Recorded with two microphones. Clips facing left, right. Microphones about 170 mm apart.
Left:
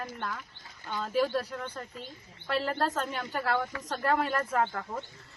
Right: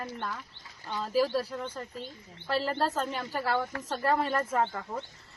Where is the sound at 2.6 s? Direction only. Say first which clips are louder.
Even; centre (ahead or behind).